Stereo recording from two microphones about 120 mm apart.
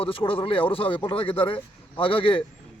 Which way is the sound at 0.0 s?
45° left (ahead or behind).